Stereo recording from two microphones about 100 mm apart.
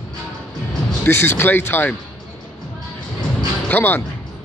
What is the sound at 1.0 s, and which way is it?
Speech, 25° left (ahead or behind).